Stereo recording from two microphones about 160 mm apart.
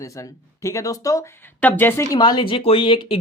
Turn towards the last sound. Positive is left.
turn(degrees=35)  # may be behind; listen again after turning